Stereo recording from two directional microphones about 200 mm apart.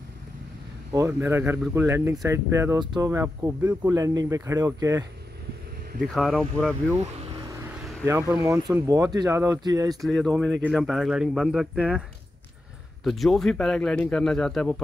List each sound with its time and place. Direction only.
0.9 s speech: 15° right (ahead or behind)
6.1 s speech: centre (ahead or behind)
8.0 s speech: 10° right (ahead or behind)
10.0 s speech: centre (ahead or behind)
13.0 s speech: centre (ahead or behind)